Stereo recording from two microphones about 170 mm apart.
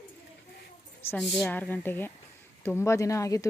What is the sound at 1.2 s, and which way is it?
Speech, centre (ahead or behind).